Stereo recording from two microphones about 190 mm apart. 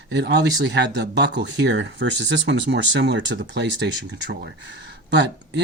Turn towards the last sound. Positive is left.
turn(degrees=-65)  # may be behind; listen again after turning